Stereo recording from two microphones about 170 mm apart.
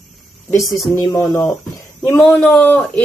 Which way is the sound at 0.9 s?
15° left (ahead or behind).